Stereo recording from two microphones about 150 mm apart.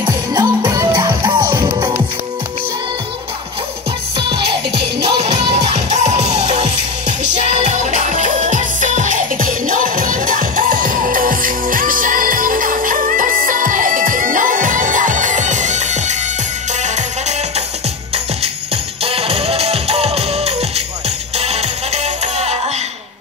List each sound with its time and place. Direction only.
0.0 s music: 30° right (ahead or behind)
4.3 s music: 40° right (ahead or behind)
19.0 s music: 40° right (ahead or behind)